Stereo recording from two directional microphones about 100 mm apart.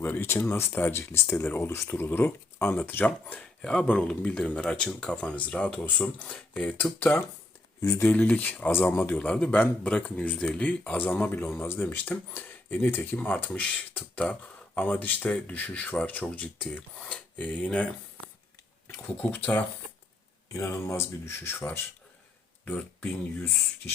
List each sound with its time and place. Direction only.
0.0 s speech: 20° left (ahead or behind)
7.8 s speech: 30° left (ahead or behind)
8.0 s speech: 15° left (ahead or behind)
19.0 s speech: 15° left (ahead or behind)
20.5 s speech: 25° left (ahead or behind)